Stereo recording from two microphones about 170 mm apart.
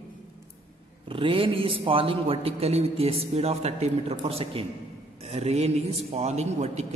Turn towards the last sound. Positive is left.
turn(degrees=-40)  # may be behind; listen again after turning